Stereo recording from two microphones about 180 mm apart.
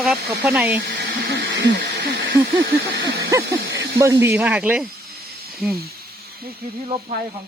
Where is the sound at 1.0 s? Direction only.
60° right (ahead or behind).